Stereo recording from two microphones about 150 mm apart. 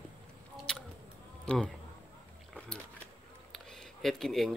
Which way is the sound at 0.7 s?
5° left (ahead or behind).